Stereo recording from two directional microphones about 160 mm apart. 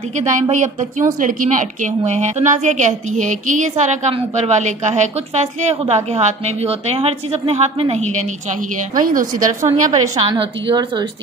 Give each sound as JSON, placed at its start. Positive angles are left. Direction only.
{"t": 0.1, "sound": "a woman's voice", "side_deg": -50}
{"t": 8.9, "sound": "a woman's voice", "side_deg": -55}
{"t": 9.6, "sound": "a woman's voice", "side_deg": -20}
{"t": 10.1, "sound": "a woman's voice", "side_deg": -35}